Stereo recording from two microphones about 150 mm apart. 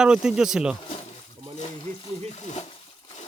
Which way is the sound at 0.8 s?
40° left (ahead or behind).